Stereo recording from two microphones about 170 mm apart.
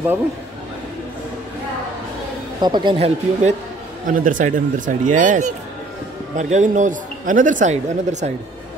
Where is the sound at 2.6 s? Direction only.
25° right (ahead or behind).